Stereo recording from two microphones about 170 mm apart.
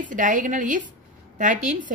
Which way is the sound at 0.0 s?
50° right (ahead or behind).